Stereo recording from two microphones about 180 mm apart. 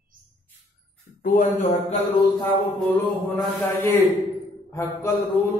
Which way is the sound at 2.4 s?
10° left (ahead or behind).